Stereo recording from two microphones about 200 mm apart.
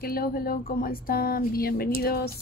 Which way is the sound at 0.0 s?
50° left (ahead or behind).